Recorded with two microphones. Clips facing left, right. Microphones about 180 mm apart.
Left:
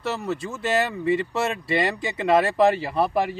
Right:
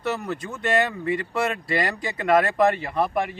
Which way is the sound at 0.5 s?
5° left (ahead or behind).